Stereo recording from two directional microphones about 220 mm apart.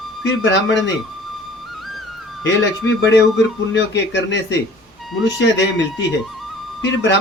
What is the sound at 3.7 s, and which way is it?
Speech, 55° left (ahead or behind).